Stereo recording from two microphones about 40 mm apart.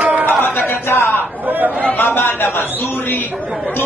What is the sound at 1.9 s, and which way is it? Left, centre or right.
Speech, left.